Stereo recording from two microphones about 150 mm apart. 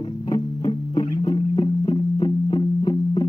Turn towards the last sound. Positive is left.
turn(degrees=30)  # may be behind; listen again after turning